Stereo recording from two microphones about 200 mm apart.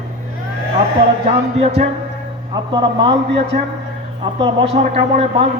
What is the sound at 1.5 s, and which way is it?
Speech, 30° right (ahead or behind).